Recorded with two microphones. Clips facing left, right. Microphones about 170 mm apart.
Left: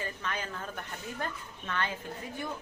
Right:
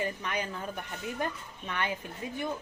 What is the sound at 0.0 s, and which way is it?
Speech, 15° right (ahead or behind).